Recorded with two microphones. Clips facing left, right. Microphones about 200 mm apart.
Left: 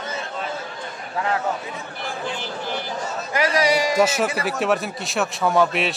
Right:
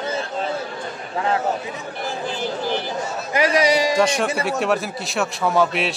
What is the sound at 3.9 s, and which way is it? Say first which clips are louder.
A man's voice: even; 5° left (ahead or behind).